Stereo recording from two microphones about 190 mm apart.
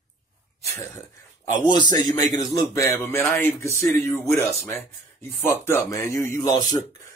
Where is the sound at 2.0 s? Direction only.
20° left (ahead or behind).